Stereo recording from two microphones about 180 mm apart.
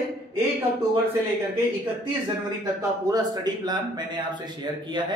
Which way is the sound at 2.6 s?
20° right (ahead or behind).